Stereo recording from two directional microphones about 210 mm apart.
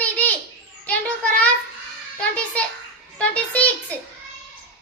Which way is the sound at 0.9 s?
5° left (ahead or behind).